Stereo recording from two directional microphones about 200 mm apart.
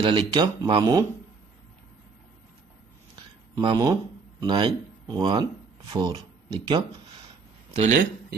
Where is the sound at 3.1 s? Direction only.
25° right (ahead or behind).